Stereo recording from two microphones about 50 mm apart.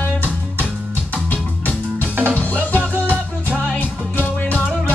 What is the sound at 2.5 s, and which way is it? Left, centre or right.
Music, right.